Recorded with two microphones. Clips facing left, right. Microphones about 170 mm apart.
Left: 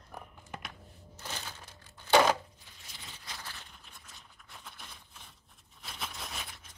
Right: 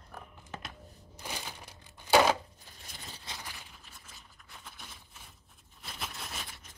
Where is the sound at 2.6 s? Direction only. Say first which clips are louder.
Right 3 dB; 40° right (ahead or behind).